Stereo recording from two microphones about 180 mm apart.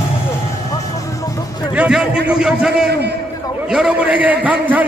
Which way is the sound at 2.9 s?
70° right (ahead or behind).